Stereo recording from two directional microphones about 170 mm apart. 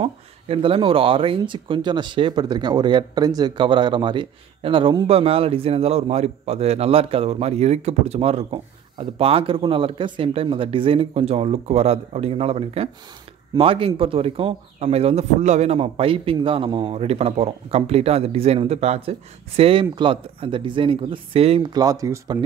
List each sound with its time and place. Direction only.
0.0 s speech: 35° right (ahead or behind)